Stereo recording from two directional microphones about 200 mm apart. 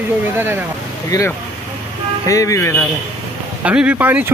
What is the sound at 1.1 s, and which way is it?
Speech, 20° left (ahead or behind).